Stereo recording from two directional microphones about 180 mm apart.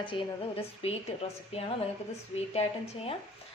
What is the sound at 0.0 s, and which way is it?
A woman's voice, 30° left (ahead or behind).